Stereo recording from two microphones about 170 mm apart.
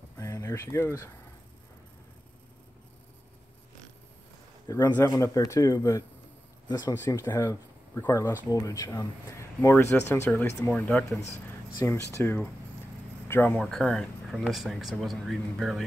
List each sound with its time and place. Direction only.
0.2 s speech: 20° left (ahead or behind)
4.6 s speech: 20° left (ahead or behind); by 15.8 s centre (ahead or behind)